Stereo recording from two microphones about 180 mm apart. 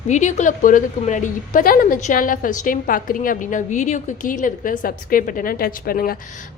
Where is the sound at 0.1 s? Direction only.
40° left (ahead or behind).